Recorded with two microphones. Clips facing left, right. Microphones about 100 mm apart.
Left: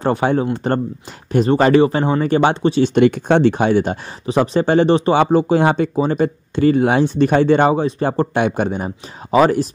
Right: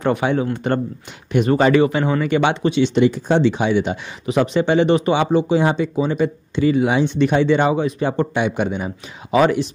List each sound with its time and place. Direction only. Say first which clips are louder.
0.0 s speech: left 2 dB; 35° left (ahead or behind)
5.1 s speech: left 3 dB; 50° left (ahead or behind)